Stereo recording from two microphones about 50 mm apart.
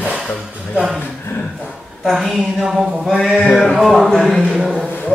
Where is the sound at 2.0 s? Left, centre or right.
Centre.